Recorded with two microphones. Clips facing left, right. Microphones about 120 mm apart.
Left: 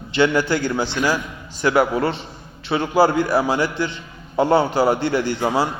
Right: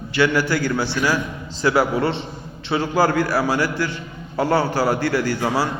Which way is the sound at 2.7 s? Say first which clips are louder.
Left 2 dB; 20° left (ahead or behind).